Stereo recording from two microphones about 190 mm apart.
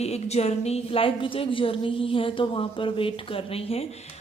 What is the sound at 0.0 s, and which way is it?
A woman's voice, 35° left (ahead or behind).